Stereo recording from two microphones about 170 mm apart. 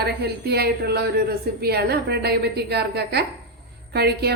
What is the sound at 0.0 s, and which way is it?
A woman's voice, 70° right (ahead or behind).